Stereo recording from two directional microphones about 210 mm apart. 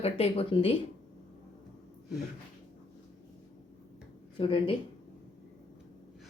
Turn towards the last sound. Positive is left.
turn(degrees=25)  # may be behind; listen again after turning